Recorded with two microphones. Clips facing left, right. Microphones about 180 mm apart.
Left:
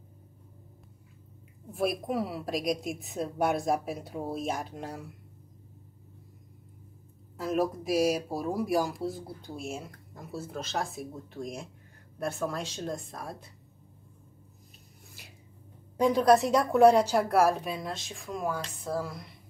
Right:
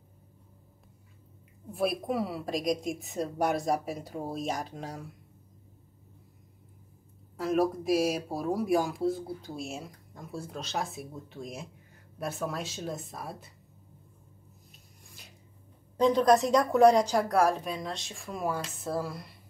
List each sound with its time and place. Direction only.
1.7 s speech: centre (ahead or behind)
7.3 s speech: centre (ahead or behind)
16.0 s speech: 10° left (ahead or behind)